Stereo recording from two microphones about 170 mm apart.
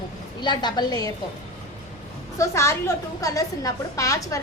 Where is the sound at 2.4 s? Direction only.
15° left (ahead or behind).